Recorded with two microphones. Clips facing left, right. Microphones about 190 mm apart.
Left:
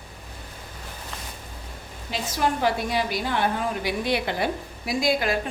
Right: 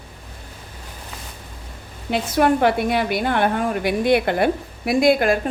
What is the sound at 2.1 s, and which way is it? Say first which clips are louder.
A woman's voice: right 8 dB; 60° right (ahead or behind).